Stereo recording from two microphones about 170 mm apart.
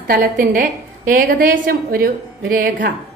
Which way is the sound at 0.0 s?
55° right (ahead or behind).